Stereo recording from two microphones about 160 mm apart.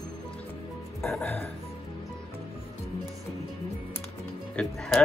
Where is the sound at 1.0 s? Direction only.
10° left (ahead or behind).